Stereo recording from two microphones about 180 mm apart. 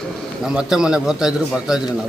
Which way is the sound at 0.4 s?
5° right (ahead or behind).